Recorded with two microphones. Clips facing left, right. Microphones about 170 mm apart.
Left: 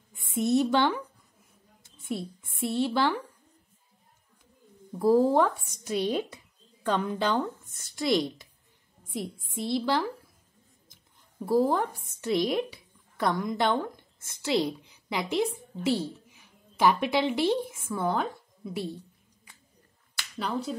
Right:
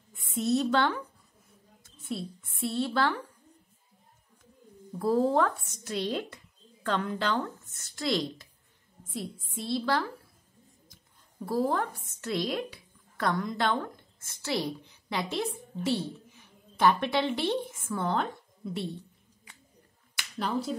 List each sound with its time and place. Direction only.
0.3 s speech: 15° left (ahead or behind)
2.7 s speech: 15° left (ahead or behind)
4.9 s speech: 10° left (ahead or behind)
9.6 s a woman's voice: 15° left (ahead or behind)
20.3 s speech: centre (ahead or behind)